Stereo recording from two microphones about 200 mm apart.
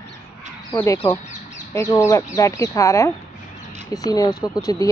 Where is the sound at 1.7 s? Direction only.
15° left (ahead or behind).